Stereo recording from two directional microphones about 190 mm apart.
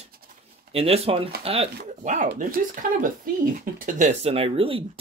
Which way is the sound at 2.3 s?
45° right (ahead or behind).